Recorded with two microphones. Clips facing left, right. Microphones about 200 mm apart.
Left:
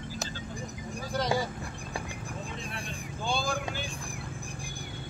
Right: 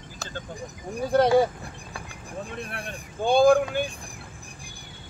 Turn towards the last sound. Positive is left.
turn(degrees=-55)  # may be behind; listen again after turning